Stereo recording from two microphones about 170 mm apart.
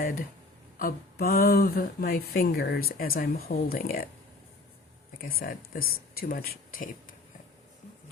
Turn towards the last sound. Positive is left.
turn(degrees=60)  # may be behind; listen again after turning